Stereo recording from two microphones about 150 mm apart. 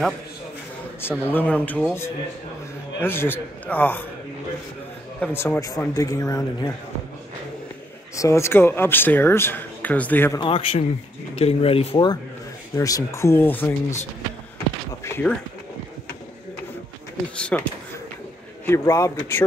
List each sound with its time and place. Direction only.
1.0 s speech: 15° left (ahead or behind)
5.2 s speech: 15° left (ahead or behind)
8.2 s speech: 20° left (ahead or behind)
10.4 s speech: 35° left (ahead or behind)
12.7 s speech: 20° left (ahead or behind)
15.0 s a sound: 15° left (ahead or behind)
17.4 s speech: 5° left (ahead or behind)
18.7 s speech: 20° left (ahead or behind)